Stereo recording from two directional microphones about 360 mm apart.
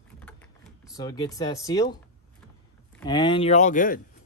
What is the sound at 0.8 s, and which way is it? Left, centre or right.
Speech, centre.